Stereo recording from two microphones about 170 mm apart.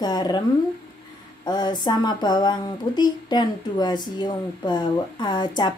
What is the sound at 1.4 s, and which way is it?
Speech, 25° left (ahead or behind).